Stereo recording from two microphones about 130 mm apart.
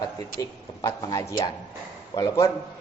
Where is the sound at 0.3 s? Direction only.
25° left (ahead or behind).